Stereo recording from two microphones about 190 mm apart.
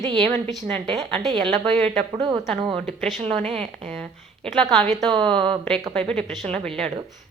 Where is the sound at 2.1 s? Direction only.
25° right (ahead or behind).